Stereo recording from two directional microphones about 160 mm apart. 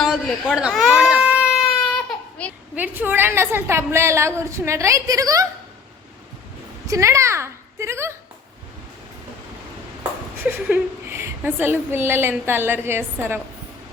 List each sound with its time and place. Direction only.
0.0 s baby cry: 5° right (ahead or behind)
2.4 s a sound: 10° left (ahead or behind)
2.7 s a woman's voice: 10° right (ahead or behind)
6.8 s a woman's voice: 20° right (ahead or behind)
10.4 s a woman's voice: 15° right (ahead or behind)